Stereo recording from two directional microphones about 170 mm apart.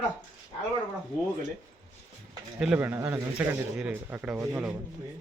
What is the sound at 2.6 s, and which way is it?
Speech, 5° right (ahead or behind).